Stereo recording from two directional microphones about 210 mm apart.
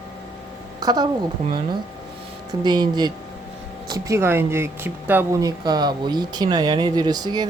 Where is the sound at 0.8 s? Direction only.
20° right (ahead or behind).